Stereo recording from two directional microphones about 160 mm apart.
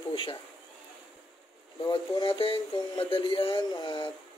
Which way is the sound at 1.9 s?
30° left (ahead or behind).